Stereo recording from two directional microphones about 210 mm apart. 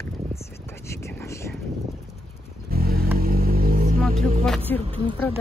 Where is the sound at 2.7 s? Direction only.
45° right (ahead or behind).